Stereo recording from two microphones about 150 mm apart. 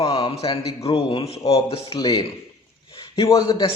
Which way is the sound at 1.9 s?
25° left (ahead or behind).